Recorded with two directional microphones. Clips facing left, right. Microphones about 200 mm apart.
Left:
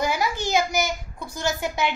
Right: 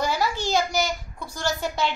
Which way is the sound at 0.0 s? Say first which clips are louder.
Even; 15° left (ahead or behind).